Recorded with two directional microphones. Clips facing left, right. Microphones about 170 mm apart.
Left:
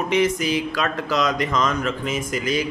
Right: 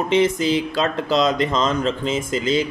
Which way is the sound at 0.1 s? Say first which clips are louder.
Right 3 dB; 25° right (ahead or behind).